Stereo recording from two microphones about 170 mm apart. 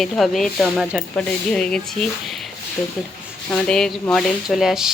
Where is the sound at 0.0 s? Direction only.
Centre (ahead or behind).